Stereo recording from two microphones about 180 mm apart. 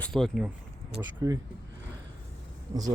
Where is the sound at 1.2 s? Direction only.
20° right (ahead or behind).